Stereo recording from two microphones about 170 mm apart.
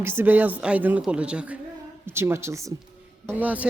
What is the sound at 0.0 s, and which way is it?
Speech, 15° right (ahead or behind).